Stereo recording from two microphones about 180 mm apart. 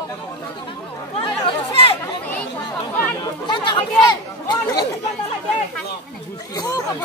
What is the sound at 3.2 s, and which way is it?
Speech, 25° left (ahead or behind).